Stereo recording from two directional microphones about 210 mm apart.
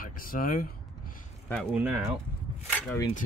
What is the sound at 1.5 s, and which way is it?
Speech, centre (ahead or behind).